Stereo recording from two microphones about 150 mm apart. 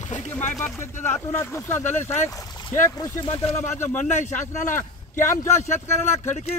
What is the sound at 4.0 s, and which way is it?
Speech, 55° left (ahead or behind).